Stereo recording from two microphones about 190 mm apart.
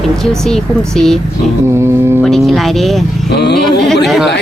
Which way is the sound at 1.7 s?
15° right (ahead or behind).